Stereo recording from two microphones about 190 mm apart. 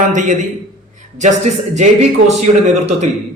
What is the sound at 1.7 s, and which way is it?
Speech, 40° right (ahead or behind).